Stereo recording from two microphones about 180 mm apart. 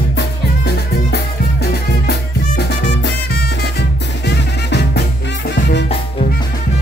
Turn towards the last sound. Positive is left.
turn(degrees=70)  # may be behind; listen again after turning